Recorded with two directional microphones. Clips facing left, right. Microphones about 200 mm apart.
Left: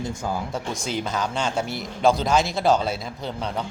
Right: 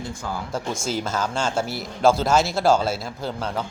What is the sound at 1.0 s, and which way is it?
A man's voice, centre (ahead or behind).